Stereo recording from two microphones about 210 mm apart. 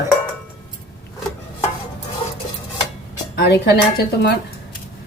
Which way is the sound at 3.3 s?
50° left (ahead or behind).